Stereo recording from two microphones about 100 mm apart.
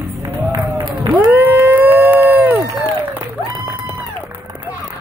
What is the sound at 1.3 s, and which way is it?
Crowd, 15° right (ahead or behind).